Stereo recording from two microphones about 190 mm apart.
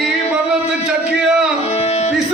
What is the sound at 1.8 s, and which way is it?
Music, 35° left (ahead or behind).